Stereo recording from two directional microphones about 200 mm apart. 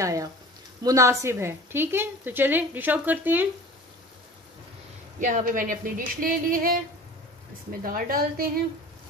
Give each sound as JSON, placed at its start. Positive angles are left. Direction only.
{"t": 0.0, "sound": "a woman's voice", "side_deg": -15}
{"t": 5.2, "sound": "speech", "side_deg": -40}
{"t": 7.8, "sound": "speech", "side_deg": -45}